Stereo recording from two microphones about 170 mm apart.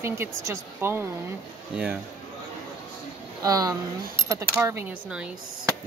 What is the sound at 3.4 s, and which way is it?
Speech, 20° right (ahead or behind).